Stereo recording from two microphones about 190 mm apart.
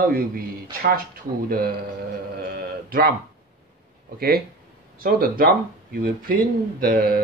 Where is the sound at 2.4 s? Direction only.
55° right (ahead or behind).